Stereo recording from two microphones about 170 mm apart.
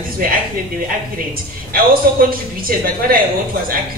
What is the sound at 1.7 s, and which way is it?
A woman's voice, 60° right (ahead or behind).